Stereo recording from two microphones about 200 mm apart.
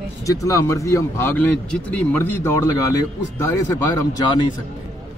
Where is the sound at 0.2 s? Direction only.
15° left (ahead or behind).